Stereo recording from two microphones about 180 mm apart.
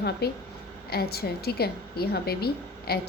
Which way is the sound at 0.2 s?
65° left (ahead or behind).